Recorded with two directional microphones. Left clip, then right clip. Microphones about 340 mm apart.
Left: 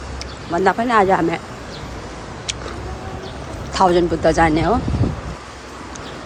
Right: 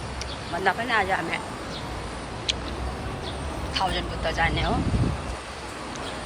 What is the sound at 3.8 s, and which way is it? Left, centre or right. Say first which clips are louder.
Speech: left 13 dB; centre.